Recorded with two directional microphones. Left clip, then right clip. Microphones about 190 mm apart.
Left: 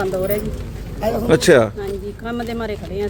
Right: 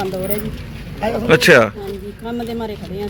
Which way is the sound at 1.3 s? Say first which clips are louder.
Right 3 dB; 5° left (ahead or behind).